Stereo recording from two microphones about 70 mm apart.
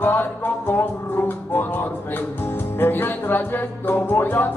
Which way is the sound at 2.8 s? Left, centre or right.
Left.